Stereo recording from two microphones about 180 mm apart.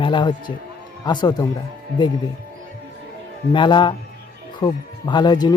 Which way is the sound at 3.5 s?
25° left (ahead or behind).